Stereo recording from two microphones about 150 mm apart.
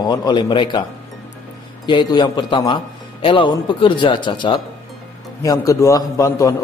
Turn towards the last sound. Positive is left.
turn(degrees=20)  # may be behind; listen again after turning